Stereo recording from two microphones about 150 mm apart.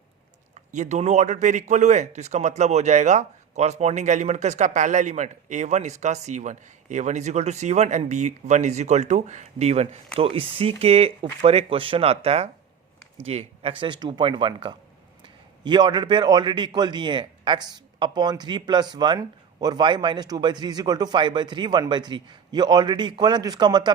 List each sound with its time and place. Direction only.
0.7 s speech: 50° right (ahead or behind); by 23.9 s 30° right (ahead or behind)